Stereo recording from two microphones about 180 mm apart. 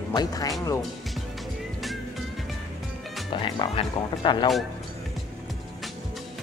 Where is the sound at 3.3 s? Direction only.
25° left (ahead or behind).